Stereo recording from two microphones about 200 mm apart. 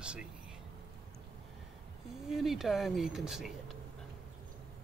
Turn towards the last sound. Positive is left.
turn(degrees=0)  # may be behind; listen again after turning